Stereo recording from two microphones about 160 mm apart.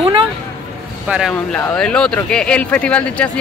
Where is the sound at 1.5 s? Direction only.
5° left (ahead or behind).